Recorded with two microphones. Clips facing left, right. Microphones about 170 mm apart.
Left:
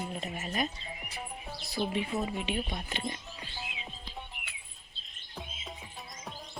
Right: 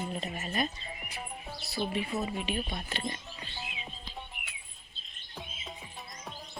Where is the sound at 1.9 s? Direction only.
20° left (ahead or behind).